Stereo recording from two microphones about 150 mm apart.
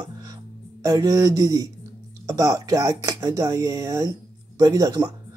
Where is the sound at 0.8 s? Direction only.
25° right (ahead or behind).